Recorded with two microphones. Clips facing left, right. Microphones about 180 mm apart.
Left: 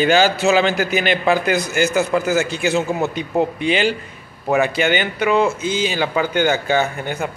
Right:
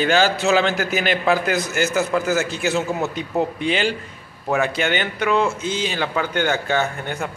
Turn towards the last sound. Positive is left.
turn(degrees=5)  # may be behind; listen again after turning